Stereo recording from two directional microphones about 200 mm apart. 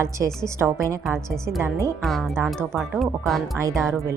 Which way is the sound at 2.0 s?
Centre (ahead or behind).